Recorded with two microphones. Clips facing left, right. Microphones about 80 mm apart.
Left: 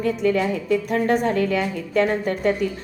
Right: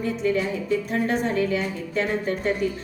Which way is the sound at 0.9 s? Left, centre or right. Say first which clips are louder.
Left 4 dB; left.